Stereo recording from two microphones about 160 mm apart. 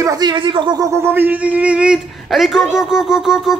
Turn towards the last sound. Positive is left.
turn(degrees=-5)  # may be behind; listen again after turning